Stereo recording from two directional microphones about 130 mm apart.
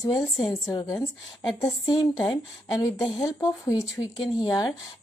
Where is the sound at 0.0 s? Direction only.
30° left (ahead or behind).